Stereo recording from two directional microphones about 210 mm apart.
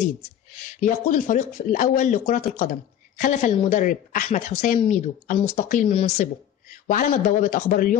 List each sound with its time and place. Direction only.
0.7 s speech: 35° left (ahead or behind)